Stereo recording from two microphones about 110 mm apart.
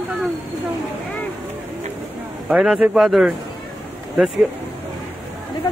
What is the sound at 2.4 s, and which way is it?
Speech, 5° right (ahead or behind).